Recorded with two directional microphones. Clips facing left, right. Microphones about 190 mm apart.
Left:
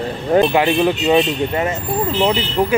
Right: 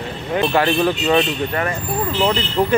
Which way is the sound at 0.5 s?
15° left (ahead or behind).